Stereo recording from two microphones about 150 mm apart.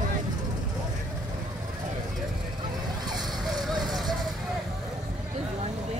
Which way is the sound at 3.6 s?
Centre (ahead or behind).